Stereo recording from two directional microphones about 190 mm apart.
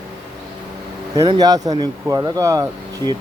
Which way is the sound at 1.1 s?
20° right (ahead or behind).